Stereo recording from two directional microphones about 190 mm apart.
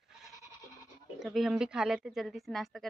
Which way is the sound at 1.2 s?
Centre (ahead or behind).